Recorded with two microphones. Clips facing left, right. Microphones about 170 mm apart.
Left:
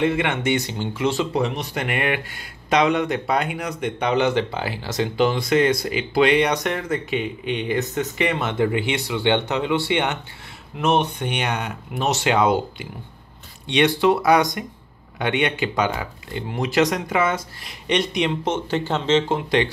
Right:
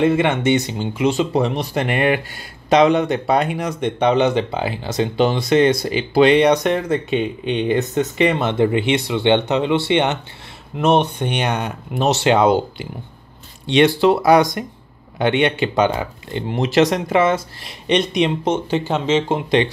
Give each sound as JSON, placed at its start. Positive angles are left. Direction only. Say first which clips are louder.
{"t": 0.0, "sound": "speech", "louder": "right 5 dB", "side_deg": -30}
{"t": 1.4, "sound": "speech", "louder": "right 4 dB", "side_deg": -30}
{"t": 19.2, "sound": "speech", "louder": "right 3 dB", "side_deg": -25}